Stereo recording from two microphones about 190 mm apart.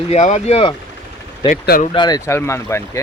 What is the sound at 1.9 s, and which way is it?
Speech, 20° left (ahead or behind).